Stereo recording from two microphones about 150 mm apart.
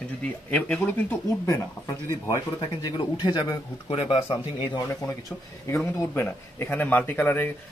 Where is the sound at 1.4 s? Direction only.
20° left (ahead or behind); by 4.4 s 40° left (ahead or behind).